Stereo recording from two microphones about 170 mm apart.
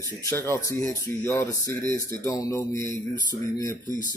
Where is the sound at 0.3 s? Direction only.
15° left (ahead or behind).